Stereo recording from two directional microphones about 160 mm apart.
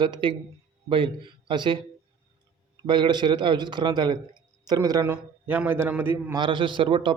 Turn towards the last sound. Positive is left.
turn(degrees=-35)  # may be behind; listen again after turning